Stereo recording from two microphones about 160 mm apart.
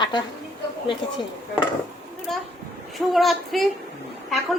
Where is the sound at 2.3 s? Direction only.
Centre (ahead or behind).